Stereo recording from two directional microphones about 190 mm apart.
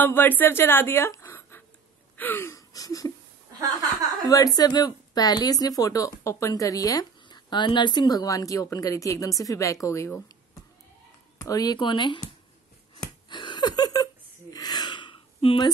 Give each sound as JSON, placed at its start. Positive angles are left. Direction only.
{"t": 0.0, "sound": "a woman's voice", "side_deg": 10}
{"t": 2.1, "sound": "gasp", "side_deg": 10}
{"t": 4.3, "sound": "speech", "side_deg": 20}
{"t": 11.4, "sound": "speech", "side_deg": 20}
{"t": 12.9, "sound": "a sound", "side_deg": 25}